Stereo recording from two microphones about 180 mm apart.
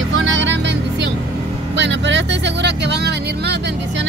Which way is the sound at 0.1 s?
90° right.